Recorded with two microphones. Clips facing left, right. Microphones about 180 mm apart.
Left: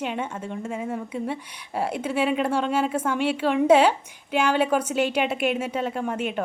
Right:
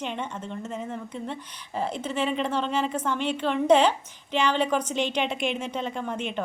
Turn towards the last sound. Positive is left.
turn(degrees=5)  # may be behind; listen again after turning